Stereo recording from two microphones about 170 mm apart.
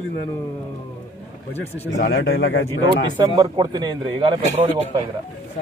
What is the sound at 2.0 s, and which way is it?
Speech, 85° left.